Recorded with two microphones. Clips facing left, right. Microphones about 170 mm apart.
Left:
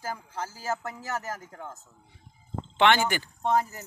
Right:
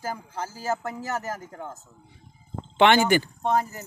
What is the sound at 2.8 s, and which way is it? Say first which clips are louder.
Speech: right 4 dB; 5° right (ahead or behind).